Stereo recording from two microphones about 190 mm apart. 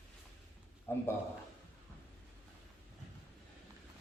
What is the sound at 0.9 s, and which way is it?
Speech, 10° left (ahead or behind).